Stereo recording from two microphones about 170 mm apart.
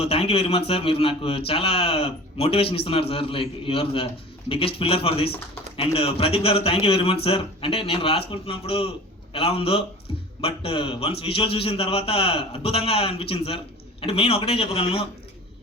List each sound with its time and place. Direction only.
0.0 s a man's voice: 35° left (ahead or behind)